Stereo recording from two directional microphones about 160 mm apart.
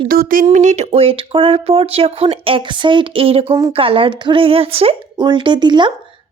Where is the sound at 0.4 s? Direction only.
45° right (ahead or behind).